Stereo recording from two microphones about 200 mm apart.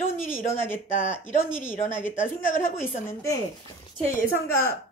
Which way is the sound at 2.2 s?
40° left (ahead or behind).